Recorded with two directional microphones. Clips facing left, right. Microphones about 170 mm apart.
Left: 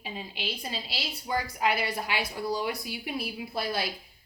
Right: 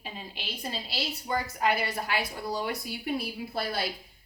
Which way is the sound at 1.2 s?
5° left (ahead or behind).